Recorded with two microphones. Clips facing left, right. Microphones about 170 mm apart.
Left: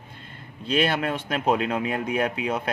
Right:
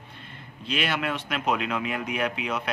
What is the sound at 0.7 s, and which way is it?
Speech, 35° left (ahead or behind).